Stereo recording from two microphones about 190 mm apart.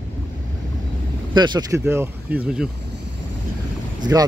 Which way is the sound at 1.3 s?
25° right (ahead or behind).